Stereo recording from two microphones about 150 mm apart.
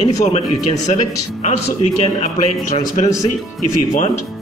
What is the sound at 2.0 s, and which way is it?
Speech, 45° left (ahead or behind).